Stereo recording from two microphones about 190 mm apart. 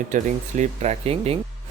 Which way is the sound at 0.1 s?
40° right (ahead or behind).